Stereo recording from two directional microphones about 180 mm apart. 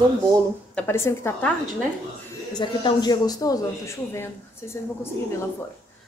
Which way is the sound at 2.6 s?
25° left (ahead or behind).